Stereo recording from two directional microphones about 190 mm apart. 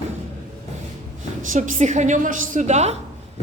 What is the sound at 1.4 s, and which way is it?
A woman's voice, 45° right (ahead or behind).